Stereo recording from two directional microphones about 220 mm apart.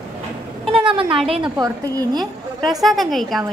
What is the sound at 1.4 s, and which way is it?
Speech, 15° right (ahead or behind).